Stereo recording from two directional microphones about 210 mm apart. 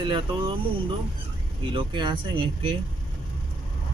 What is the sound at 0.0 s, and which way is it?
Speech, 25° right (ahead or behind).